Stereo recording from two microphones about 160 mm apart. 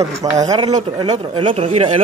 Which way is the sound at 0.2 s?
25° right (ahead or behind).